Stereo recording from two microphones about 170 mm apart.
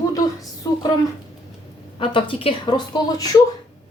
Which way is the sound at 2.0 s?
30° left (ahead or behind).